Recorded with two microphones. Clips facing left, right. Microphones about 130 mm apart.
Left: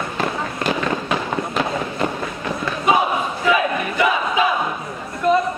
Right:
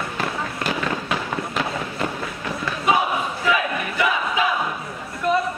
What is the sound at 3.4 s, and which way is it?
Battle cry, 25° left (ahead or behind).